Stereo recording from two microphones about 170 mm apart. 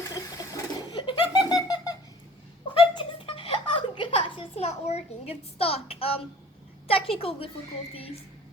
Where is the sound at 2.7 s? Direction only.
30° left (ahead or behind).